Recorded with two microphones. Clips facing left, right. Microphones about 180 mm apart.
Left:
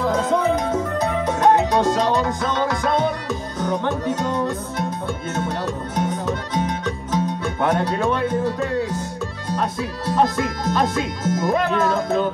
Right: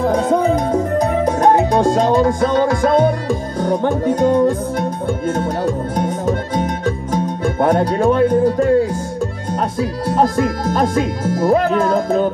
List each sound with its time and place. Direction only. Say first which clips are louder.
0.0 s music: right 4 dB; 45° right (ahead or behind)
5.9 s music: right 5 dB; 50° right (ahead or behind)
9.6 s speech: right 6 dB; 45° right (ahead or behind)